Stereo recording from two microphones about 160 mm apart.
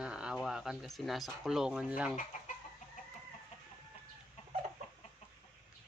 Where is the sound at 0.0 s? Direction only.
5° right (ahead or behind).